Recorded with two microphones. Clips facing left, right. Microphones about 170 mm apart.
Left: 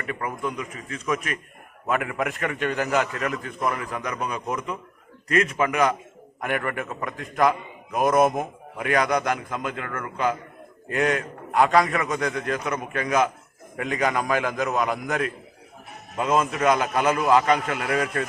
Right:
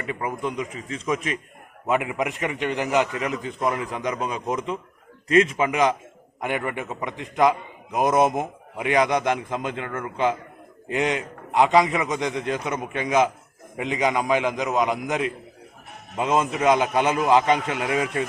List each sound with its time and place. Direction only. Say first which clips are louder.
0.0 s a man's voice: right 1 dB; 20° right (ahead or behind)